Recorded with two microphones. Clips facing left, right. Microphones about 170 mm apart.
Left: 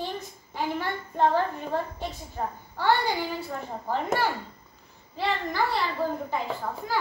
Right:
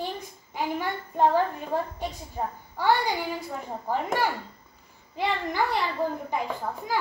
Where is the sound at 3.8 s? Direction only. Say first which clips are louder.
Even; 10° right (ahead or behind).